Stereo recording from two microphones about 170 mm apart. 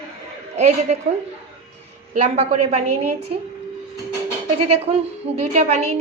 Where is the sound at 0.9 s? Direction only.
40° right (ahead or behind).